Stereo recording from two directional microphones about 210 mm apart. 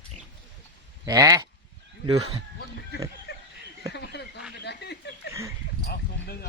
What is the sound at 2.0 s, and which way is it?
Speech, 25° right (ahead or behind).